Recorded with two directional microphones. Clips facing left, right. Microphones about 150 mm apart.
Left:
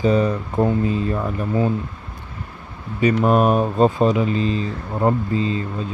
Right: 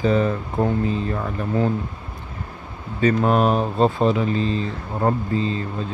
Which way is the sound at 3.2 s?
10° left (ahead or behind).